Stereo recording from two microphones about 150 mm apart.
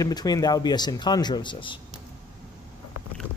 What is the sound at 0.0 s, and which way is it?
Speech, 25° left (ahead or behind).